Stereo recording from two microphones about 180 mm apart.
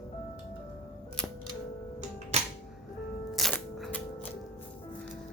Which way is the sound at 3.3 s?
Centre (ahead or behind).